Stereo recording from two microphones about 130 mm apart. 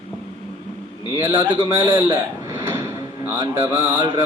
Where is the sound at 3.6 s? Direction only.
15° right (ahead or behind).